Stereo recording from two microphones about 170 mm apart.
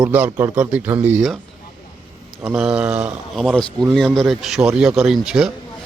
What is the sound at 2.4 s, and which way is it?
Speech, 5° right (ahead or behind).